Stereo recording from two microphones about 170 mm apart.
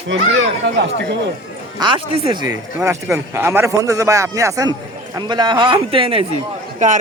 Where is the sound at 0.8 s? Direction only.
90° right.